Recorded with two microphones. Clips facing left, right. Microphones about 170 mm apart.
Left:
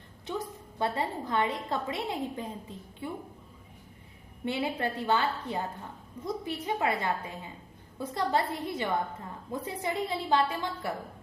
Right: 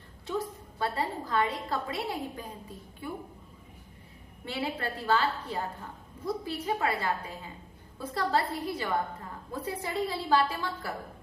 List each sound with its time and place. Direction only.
0.3 s a woman's voice: 20° left (ahead or behind)
4.4 s a woman's voice: 20° left (ahead or behind)